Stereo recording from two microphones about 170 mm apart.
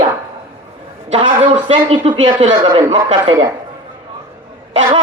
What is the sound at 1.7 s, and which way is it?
A man's voice, 35° right (ahead or behind).